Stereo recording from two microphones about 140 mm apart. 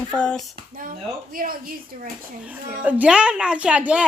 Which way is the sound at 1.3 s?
90° right.